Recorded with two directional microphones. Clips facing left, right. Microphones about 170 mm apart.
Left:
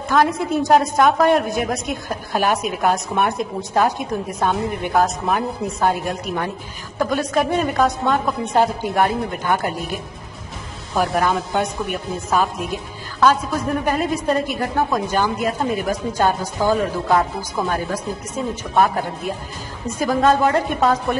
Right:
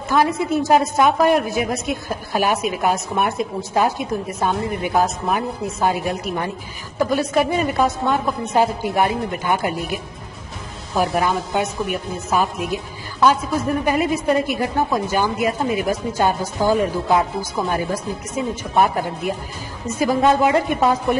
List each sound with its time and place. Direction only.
0.1 s a woman's voice: 5° right (ahead or behind)